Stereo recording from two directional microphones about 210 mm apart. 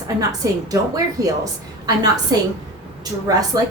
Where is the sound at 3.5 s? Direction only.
15° right (ahead or behind).